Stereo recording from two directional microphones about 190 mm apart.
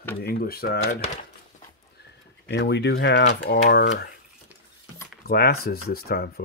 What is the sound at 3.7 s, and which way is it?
Speech, 60° left (ahead or behind).